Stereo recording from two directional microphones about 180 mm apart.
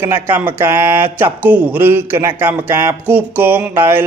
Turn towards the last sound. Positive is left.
turn(degrees=-10)  # may be behind; listen again after turning